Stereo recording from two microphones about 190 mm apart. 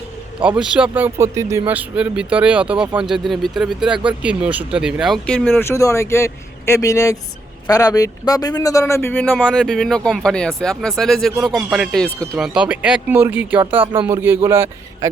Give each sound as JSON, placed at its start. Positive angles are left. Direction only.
{"t": 0.4, "sound": "speech", "side_deg": -5}
{"t": 12.4, "sound": "speech", "side_deg": -5}
{"t": 13.6, "sound": "speech", "side_deg": -30}
{"t": 14.1, "sound": "speech", "side_deg": -10}